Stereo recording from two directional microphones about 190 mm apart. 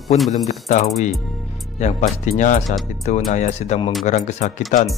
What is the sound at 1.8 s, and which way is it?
Speech, 35° left (ahead or behind).